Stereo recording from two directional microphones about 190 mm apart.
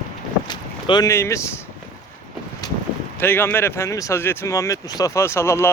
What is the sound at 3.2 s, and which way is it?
Speech, 10° left (ahead or behind).